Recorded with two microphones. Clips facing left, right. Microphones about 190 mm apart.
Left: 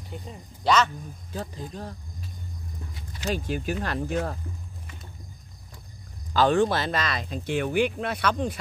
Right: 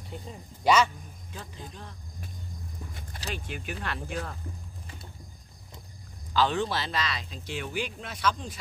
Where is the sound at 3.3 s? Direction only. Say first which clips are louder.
Left 9 dB; 40° left (ahead or behind).